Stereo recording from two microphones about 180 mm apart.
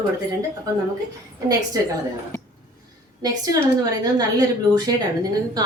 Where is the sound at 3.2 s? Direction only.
20° right (ahead or behind).